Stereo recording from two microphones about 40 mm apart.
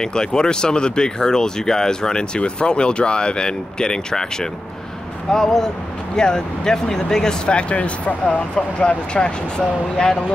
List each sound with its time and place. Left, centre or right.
0.0 s speech: centre
7.4 s speech: left